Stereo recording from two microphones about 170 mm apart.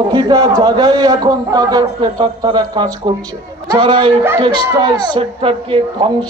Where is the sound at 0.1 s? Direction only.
25° right (ahead or behind).